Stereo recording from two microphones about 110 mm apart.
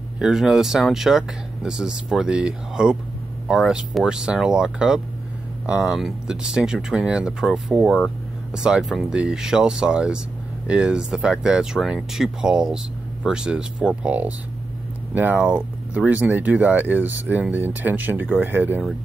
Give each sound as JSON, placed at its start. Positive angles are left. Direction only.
{"t": 0.2, "sound": "speech", "side_deg": -5}